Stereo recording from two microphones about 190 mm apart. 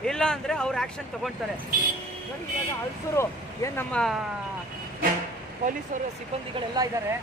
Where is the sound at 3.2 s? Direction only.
10° left (ahead or behind).